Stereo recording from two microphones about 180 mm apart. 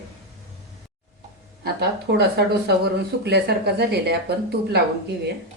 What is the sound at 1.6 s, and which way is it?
Speech, 65° right (ahead or behind).